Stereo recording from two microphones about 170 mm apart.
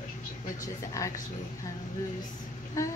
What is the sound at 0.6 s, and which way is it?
Speech, 20° left (ahead or behind).